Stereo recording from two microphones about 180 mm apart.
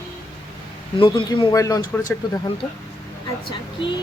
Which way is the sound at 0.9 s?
25° left (ahead or behind).